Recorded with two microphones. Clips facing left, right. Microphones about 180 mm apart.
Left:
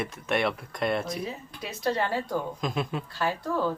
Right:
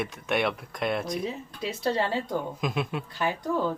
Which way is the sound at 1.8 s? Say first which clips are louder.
Even; 25° right (ahead or behind).